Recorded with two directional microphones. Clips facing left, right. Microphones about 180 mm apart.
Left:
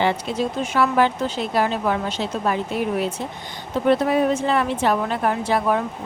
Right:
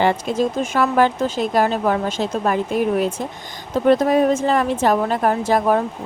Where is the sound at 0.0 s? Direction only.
45° right (ahead or behind).